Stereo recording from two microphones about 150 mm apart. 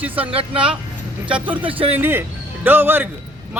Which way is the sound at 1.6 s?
35° right (ahead or behind).